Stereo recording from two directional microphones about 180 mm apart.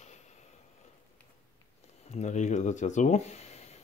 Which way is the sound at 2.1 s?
40° left (ahead or behind).